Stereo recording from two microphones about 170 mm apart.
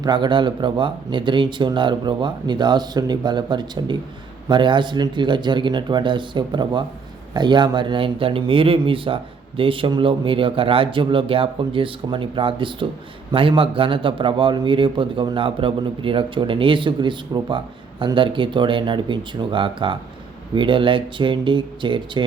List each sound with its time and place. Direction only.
0.0 s a man's voice: 25° right (ahead or behind)